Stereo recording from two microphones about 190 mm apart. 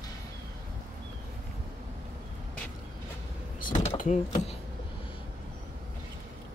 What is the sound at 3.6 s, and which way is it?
Speech, 40° left (ahead or behind).